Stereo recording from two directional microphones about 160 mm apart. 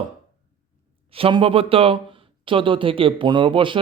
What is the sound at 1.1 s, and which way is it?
Speech, 35° right (ahead or behind).